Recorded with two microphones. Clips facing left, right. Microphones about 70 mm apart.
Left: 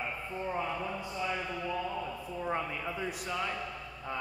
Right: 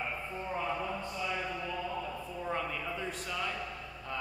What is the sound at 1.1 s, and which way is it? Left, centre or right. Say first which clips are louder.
A man's voice: left 1 dB; centre.